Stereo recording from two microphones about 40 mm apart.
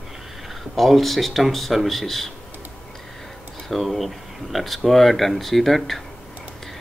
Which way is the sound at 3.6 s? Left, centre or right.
Centre.